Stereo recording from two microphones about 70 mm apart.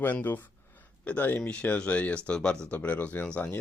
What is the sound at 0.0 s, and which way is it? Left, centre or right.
Speech, left.